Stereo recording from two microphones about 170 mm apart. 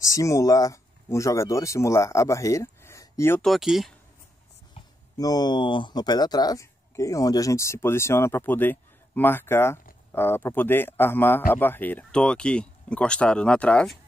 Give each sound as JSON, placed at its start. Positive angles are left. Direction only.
{"t": 0.0, "sound": "speech", "side_deg": 20}
{"t": 3.4, "sound": "speech", "side_deg": 0}
{"t": 5.1, "sound": "a man's voice", "side_deg": 20}